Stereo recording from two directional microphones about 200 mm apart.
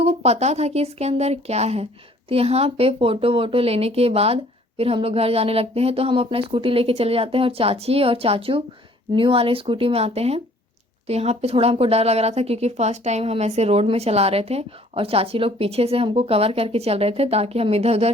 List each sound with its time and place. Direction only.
0.0 s a woman's voice: 30° right (ahead or behind)